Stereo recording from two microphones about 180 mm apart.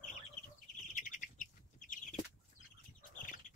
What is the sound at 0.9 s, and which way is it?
Bird, 45° left (ahead or behind).